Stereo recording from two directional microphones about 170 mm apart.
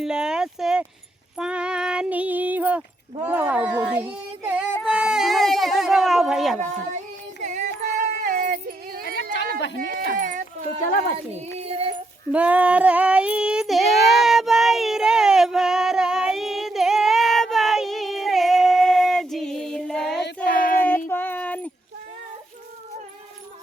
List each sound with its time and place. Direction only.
0.0 s speech: 5° right (ahead or behind)
1.4 s female singing: 5° right (ahead or behind)
3.2 s speech: 10° right (ahead or behind)
4.9 s baby cry: 5° right (ahead or behind)
7.4 s a sound: 45° right (ahead or behind)
11.6 s female singing: 35° right (ahead or behind)
12.3 s child singing: 10° right (ahead or behind)
20.1 s child singing: 75° left (ahead or behind)
21.1 s a sound: 10° left (ahead or behind)